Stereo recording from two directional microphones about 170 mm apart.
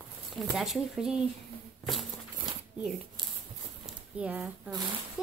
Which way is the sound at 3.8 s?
5° right (ahead or behind).